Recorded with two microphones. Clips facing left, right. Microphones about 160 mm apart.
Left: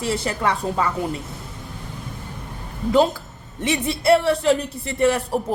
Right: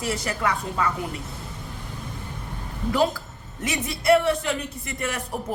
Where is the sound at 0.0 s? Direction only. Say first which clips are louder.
Left 4 dB; 30° left (ahead or behind).